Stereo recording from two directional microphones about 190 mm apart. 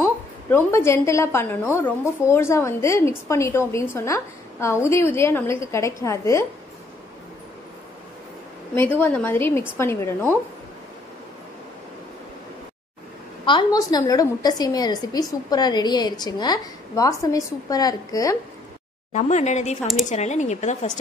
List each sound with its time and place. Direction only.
0.0 s a woman's voice: 10° left (ahead or behind)
8.7 s a woman's voice: 10° left (ahead or behind)
13.5 s a woman's voice: 20° left (ahead or behind)
19.1 s speech: 35° left (ahead or behind)